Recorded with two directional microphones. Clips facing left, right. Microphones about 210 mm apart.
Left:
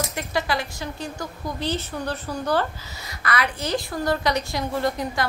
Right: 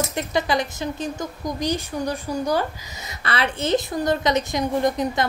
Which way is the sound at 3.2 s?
25° right (ahead or behind).